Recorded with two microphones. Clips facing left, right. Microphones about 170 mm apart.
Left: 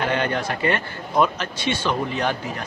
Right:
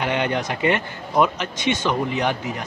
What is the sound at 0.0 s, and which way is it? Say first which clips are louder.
Speech: even; 15° right (ahead or behind).